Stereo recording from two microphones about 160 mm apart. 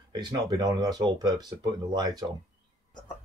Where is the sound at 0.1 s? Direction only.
25° right (ahead or behind).